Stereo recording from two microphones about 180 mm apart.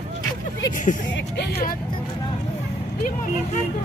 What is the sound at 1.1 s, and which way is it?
Speech, 65° left (ahead or behind).